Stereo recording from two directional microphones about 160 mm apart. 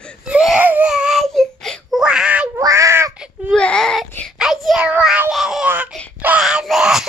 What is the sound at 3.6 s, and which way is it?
Speech, 5° left (ahead or behind).